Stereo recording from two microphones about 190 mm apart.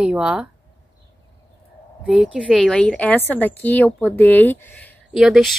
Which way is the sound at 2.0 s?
5° right (ahead or behind).